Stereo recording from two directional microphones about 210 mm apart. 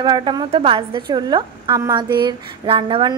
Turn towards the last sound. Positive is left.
turn(degrees=-25)  # may be behind; listen again after turning